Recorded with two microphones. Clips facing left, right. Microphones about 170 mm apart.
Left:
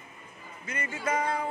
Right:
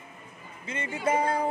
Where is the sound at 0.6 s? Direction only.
25° right (ahead or behind).